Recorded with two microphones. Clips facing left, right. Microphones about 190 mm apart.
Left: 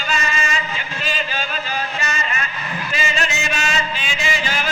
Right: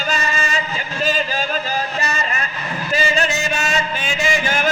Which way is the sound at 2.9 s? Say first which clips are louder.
Right 5 dB; 40° right (ahead or behind).